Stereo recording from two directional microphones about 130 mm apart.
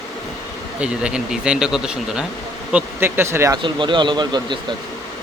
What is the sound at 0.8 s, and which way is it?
Speech, 5° right (ahead or behind).